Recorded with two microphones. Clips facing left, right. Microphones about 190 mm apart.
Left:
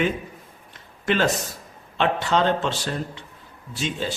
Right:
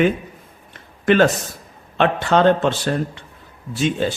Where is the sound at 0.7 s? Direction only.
55° right (ahead or behind).